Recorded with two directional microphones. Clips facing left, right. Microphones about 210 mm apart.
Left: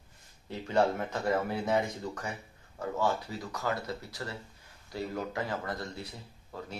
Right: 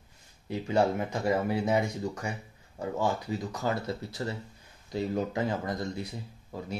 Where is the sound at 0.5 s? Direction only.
10° right (ahead or behind).